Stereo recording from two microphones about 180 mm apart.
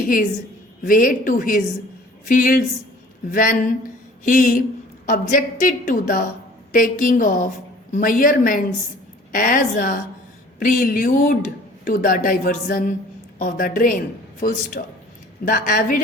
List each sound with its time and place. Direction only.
0.9 s speech: 50° left (ahead or behind)